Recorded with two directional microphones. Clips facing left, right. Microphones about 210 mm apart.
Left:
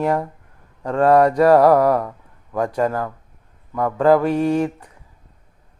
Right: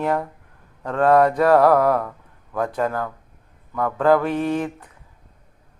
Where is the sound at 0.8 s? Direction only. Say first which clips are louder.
Left 2 dB; 10° left (ahead or behind).